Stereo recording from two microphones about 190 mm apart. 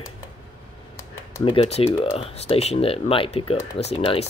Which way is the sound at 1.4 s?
30° left (ahead or behind).